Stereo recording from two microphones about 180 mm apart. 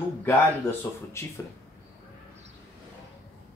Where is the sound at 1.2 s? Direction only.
15° left (ahead or behind).